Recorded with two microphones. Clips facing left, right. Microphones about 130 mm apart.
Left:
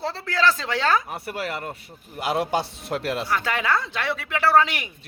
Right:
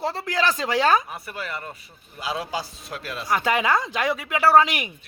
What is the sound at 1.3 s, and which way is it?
A man's voice, 70° left (ahead or behind).